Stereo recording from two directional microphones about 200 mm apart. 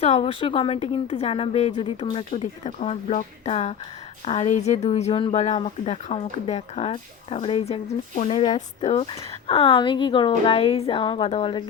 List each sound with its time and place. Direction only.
0.0 s a woman's voice: 30° left (ahead or behind)